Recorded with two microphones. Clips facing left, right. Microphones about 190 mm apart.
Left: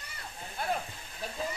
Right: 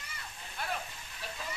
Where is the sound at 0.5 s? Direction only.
40° left (ahead or behind).